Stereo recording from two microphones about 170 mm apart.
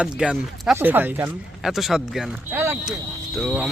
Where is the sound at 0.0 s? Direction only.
5° right (ahead or behind).